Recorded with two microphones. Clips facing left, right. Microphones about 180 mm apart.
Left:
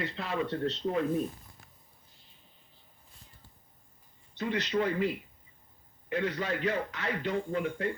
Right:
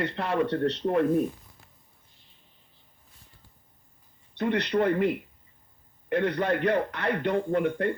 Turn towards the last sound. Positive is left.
turn(degrees=-60)  # may be behind; listen again after turning